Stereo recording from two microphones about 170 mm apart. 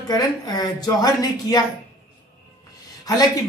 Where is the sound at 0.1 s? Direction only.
25° left (ahead or behind).